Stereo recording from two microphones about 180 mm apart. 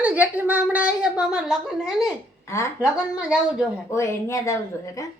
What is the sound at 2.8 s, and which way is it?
Speech, 5° right (ahead or behind).